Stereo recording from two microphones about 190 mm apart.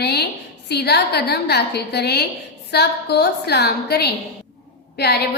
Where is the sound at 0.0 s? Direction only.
60° left (ahead or behind).